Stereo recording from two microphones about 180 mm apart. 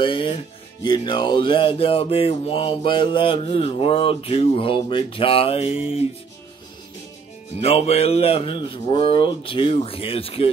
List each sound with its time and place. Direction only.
0.0 s speech: 30° left (ahead or behind)
0.8 s music: 25° left (ahead or behind)
7.6 s music: 35° left (ahead or behind)